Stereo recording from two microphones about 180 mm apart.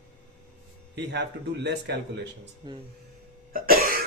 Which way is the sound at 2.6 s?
25° right (ahead or behind).